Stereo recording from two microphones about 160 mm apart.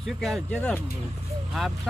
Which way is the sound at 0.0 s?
Centre (ahead or behind).